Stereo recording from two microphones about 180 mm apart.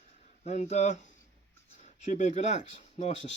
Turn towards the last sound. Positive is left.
turn(degrees=40)  # may be behind; listen again after turning